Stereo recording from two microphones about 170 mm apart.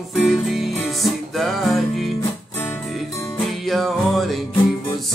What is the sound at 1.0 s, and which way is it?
Music, centre (ahead or behind).